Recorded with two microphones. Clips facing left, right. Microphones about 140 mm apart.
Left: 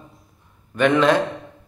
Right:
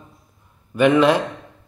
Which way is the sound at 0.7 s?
5° right (ahead or behind).